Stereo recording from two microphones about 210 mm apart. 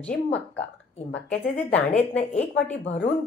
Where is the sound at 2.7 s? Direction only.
30° left (ahead or behind).